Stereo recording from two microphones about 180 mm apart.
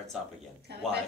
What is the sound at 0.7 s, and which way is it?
Speech, 65° right (ahead or behind).